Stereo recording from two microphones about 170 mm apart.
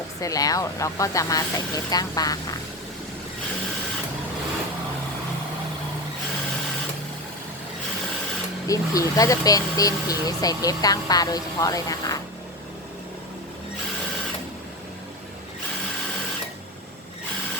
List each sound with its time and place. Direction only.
0.2 s speech: 20° left (ahead or behind)
8.6 s speech: 20° left (ahead or behind)